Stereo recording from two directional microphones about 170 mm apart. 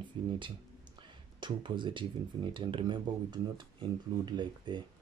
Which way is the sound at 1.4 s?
30° right (ahead or behind).